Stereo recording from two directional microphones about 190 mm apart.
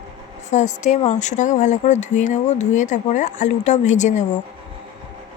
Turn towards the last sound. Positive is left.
turn(degrees=40)  # may be behind; listen again after turning